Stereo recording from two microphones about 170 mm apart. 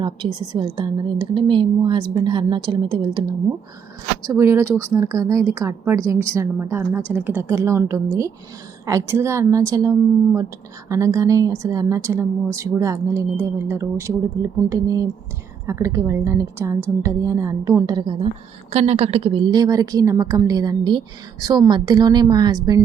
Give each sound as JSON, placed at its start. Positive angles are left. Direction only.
{"t": 0.0, "sound": "a woman's voice", "side_deg": -25}
{"t": 4.3, "sound": "a woman's voice", "side_deg": -15}
{"t": 18.7, "sound": "a woman's voice", "side_deg": -40}